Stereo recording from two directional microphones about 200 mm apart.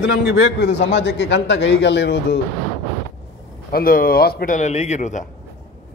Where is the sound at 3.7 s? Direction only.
45° left (ahead or behind).